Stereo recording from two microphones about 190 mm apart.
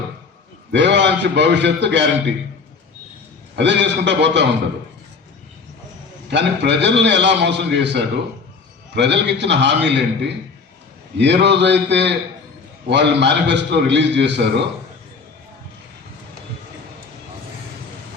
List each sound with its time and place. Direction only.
0.7 s a man's voice: 65° right (ahead or behind)
3.5 s a man's voice: 65° right (ahead or behind)
6.3 s a man's voice: 65° right (ahead or behind)